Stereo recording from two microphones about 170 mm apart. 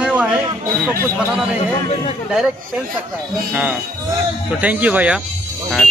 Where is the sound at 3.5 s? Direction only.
10° right (ahead or behind).